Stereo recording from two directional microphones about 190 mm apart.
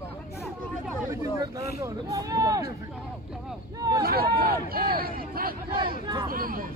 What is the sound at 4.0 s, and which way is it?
Speech, 55° right (ahead or behind).